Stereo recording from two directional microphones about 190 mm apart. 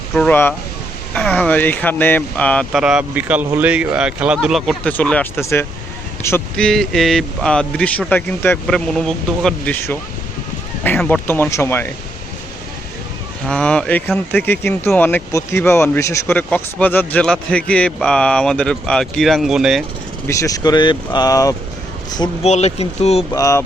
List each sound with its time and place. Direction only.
0.1 s speech: 5° left (ahead or behind)
13.5 s speech: 5° left (ahead or behind)
20.2 s speech: 15° left (ahead or behind)
22.4 s speech: 35° left (ahead or behind)
23.3 s speech: 15° left (ahead or behind)